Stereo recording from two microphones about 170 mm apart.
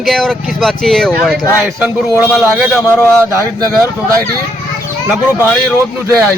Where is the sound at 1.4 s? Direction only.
15° left (ahead or behind).